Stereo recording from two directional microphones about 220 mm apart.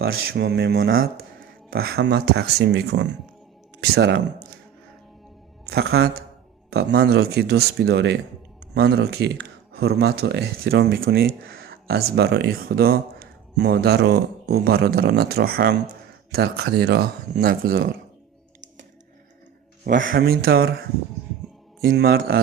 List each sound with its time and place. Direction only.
0.1 s speech: 50° right (ahead or behind)
5.6 s speech: 45° right (ahead or behind)
19.8 s a man's voice: 40° right (ahead or behind)
21.8 s speech: 45° right (ahead or behind)